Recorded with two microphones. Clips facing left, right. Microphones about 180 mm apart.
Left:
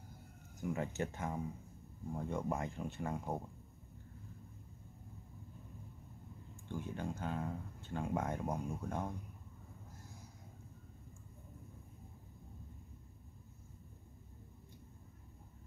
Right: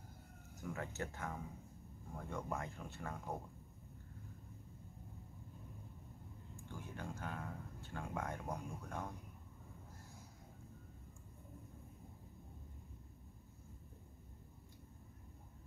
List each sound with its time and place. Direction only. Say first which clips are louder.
0.6 s speech: left 6 dB; 20° left (ahead or behind)
6.7 s speech: left 7 dB; 20° left (ahead or behind)